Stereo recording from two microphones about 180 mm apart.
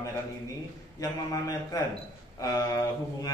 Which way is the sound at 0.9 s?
20° left (ahead or behind).